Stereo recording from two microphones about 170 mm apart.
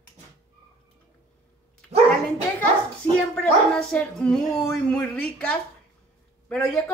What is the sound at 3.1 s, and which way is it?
A woman's voice, 5° left (ahead or behind).